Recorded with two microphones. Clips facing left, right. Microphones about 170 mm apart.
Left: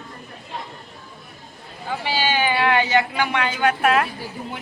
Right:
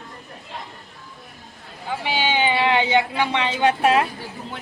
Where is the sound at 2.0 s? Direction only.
20° right (ahead or behind).